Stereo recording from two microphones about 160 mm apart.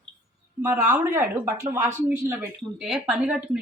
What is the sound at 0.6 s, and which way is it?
Speech, 15° right (ahead or behind).